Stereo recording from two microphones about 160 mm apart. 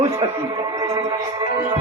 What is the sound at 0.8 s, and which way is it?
Music, 20° right (ahead or behind).